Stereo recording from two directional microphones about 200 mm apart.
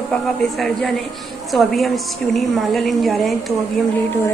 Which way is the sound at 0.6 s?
Centre (ahead or behind).